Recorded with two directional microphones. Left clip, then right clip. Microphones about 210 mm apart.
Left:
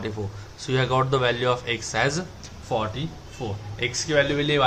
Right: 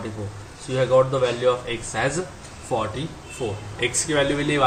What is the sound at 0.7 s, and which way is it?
Speech, 40° left (ahead or behind).